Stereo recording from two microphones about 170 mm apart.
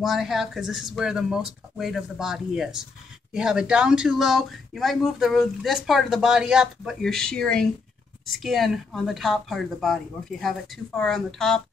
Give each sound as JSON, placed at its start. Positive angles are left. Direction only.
{"t": 0.0, "sound": "speech", "side_deg": 0}